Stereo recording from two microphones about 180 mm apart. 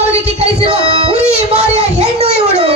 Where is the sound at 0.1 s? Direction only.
35° right (ahead or behind).